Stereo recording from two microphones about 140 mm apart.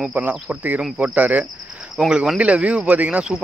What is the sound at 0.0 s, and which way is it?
Cricket, 10° right (ahead or behind).